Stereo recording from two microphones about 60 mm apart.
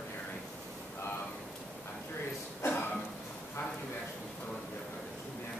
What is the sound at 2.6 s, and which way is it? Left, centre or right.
Cough, left.